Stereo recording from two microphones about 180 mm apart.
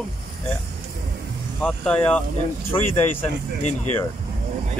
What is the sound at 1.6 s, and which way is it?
Speech, 5° left (ahead or behind).